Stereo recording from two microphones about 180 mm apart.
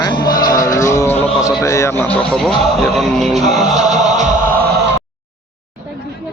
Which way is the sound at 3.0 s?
Centre (ahead or behind).